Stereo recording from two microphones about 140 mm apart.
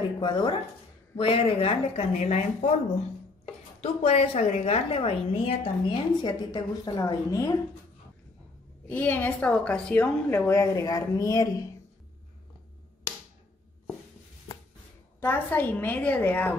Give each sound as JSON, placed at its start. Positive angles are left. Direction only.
{"t": 0.2, "sound": "speech", "side_deg": 35}
{"t": 3.8, "sound": "a woman's voice", "side_deg": 50}
{"t": 6.2, "sound": "a woman's voice", "side_deg": 30}
{"t": 8.8, "sound": "a woman's voice", "side_deg": 15}
{"t": 10.5, "sound": "a woman's voice", "side_deg": 25}
{"t": 15.1, "sound": "a woman's voice", "side_deg": 15}